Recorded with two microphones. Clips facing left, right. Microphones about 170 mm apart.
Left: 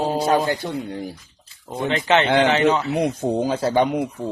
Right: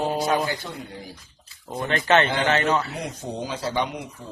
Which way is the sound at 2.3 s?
65° left (ahead or behind).